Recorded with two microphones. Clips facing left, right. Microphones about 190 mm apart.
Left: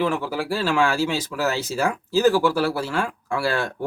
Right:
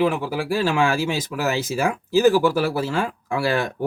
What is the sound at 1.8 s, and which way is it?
Speech, 15° right (ahead or behind).